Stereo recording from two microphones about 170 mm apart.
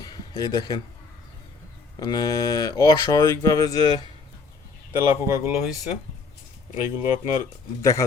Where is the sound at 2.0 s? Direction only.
25° left (ahead or behind).